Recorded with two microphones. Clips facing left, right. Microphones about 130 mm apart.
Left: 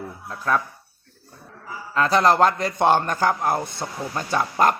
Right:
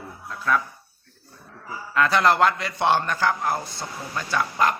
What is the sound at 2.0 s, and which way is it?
Speech, 35° left (ahead or behind).